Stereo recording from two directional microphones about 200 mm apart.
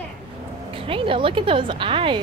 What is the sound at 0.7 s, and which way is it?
A woman's voice, 25° right (ahead or behind).